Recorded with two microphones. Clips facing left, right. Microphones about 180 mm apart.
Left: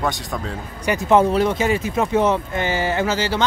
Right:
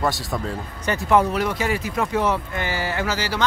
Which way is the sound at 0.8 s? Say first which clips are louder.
Left 3 dB; 20° left (ahead or behind).